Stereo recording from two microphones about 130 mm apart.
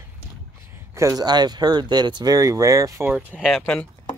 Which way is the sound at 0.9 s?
25° right (ahead or behind).